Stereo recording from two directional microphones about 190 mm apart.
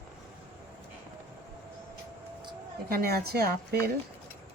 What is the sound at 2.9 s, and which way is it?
A woman's voice, 55° right (ahead or behind).